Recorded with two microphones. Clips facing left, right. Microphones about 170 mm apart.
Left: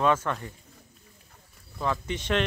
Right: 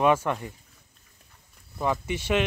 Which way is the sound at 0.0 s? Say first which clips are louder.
Right 3 dB; 15° right (ahead or behind).